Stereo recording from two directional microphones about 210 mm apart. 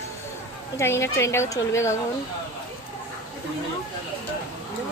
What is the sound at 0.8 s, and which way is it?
Speech, 10° left (ahead or behind).